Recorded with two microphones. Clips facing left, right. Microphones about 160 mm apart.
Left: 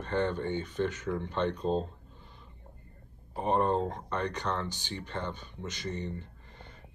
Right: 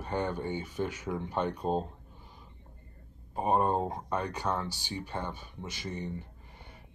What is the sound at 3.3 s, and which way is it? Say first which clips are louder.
Speech: even; 10° right (ahead or behind).